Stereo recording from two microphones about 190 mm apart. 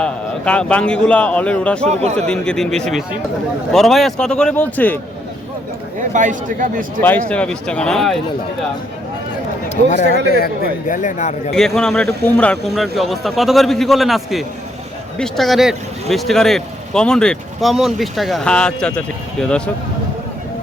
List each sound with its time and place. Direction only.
0.0 s a man's voice: 5° left (ahead or behind)
1.9 s speech: 35° right (ahead or behind)
2.1 s speech: 5° left (ahead or behind)
6.0 s speech: 40° right (ahead or behind)
7.3 s speech: 5° left (ahead or behind)
9.6 s speech: 40° left (ahead or behind)
10.3 s a man's voice: 50° left (ahead or behind)
11.5 s speech: centre (ahead or behind)